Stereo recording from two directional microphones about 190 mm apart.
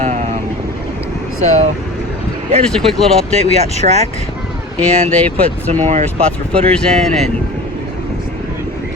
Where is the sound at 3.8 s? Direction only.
35° right (ahead or behind).